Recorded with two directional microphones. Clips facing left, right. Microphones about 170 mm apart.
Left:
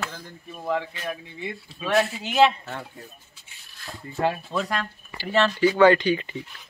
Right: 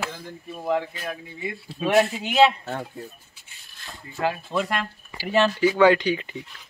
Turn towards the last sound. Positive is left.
turn(degrees=-10)  # may be behind; listen again after turning